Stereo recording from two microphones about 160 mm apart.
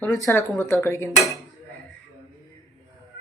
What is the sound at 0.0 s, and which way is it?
Speech, 20° left (ahead or behind).